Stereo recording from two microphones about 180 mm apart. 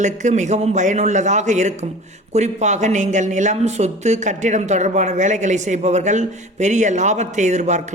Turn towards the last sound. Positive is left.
turn(degrees=-40)  # may be behind; listen again after turning